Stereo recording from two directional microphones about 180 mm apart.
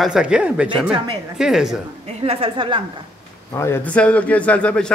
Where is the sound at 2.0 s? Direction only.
35° right (ahead or behind).